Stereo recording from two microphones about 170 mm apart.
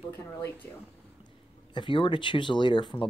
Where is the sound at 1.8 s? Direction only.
30° left (ahead or behind).